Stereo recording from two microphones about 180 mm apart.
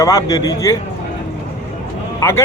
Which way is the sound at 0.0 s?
20° left (ahead or behind).